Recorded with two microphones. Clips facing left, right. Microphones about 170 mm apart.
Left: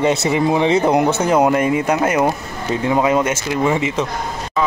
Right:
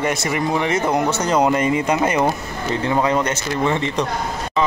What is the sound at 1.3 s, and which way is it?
Speech, 5° left (ahead or behind).